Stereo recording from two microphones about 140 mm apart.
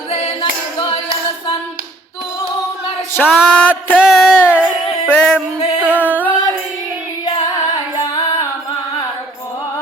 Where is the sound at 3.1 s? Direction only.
15° left (ahead or behind).